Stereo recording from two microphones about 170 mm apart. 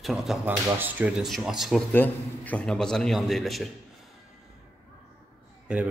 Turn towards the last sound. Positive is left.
turn(degrees=-5)  # may be behind; listen again after turning